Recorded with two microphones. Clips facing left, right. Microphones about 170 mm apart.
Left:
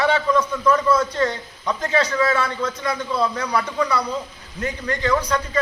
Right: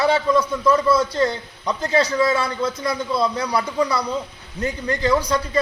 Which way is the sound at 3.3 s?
35° right (ahead or behind).